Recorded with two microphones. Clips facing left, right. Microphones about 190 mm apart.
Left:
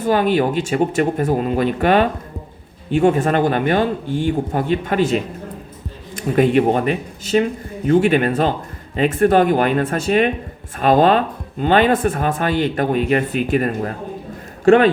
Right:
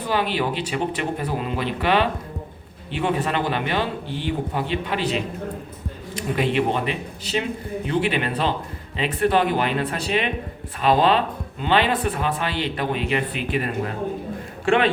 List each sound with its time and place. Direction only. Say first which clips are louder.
0.0 s speech: left 7 dB; 45° left (ahead or behind)